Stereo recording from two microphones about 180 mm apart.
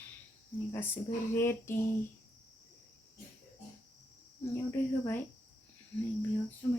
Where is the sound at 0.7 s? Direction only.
10° left (ahead or behind).